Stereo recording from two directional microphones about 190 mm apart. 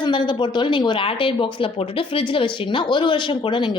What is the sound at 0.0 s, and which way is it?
A woman's voice, 25° left (ahead or behind).